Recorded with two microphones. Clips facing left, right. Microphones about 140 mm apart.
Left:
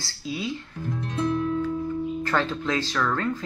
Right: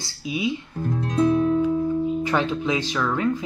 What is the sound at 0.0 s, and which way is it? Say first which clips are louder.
Speech: right 5 dB; 15° right (ahead or behind).